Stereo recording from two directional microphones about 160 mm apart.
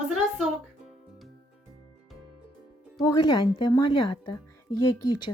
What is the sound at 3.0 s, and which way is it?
Speech, 25° left (ahead or behind).